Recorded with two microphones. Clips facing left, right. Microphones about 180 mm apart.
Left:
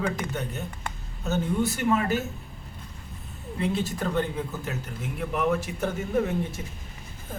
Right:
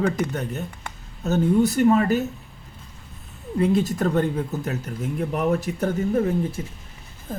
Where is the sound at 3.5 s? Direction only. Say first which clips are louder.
Right 7 dB; 40° right (ahead or behind).